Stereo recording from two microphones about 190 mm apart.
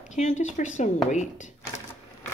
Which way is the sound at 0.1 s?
40° left (ahead or behind).